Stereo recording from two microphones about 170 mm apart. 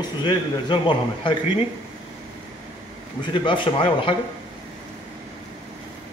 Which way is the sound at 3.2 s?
30° left (ahead or behind).